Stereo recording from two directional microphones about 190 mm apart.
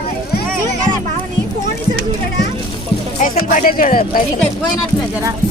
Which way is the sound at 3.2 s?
40° left (ahead or behind).